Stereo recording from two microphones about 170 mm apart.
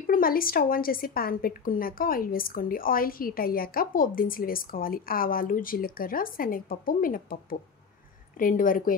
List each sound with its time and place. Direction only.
0.0 s a woman's voice: 55° left (ahead or behind)
8.4 s speech: 55° left (ahead or behind)